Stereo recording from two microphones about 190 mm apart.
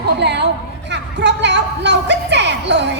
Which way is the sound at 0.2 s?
65° right (ahead or behind).